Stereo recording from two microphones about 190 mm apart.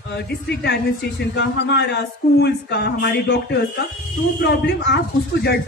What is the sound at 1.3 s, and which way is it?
A woman's voice, 60° left (ahead or behind).